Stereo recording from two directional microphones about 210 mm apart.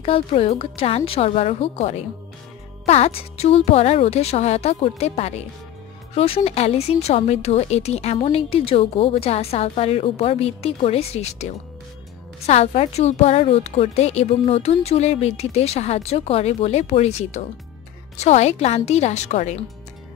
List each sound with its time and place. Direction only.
0.0 s a woman's voice: 25° left (ahead or behind)